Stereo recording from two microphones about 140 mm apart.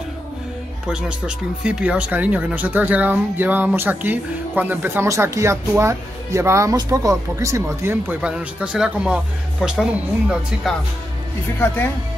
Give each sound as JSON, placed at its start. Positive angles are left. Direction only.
{"t": 0.8, "sound": "speech", "side_deg": -5}
{"t": 11.6, "sound": "speech", "side_deg": 15}